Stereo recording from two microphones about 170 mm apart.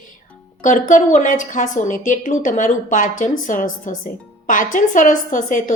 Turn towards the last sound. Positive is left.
turn(degrees=50)  # may be behind; listen again after turning